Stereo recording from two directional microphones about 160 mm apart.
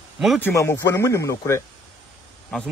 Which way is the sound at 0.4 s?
15° left (ahead or behind).